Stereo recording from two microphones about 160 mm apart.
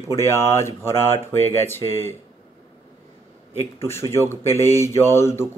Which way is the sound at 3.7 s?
15° left (ahead or behind).